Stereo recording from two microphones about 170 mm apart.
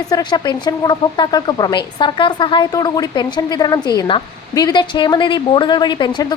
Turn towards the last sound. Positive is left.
turn(degrees=25)  # may be behind; listen again after turning